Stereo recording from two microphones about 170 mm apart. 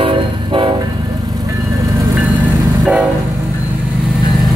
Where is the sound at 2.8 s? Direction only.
Centre (ahead or behind).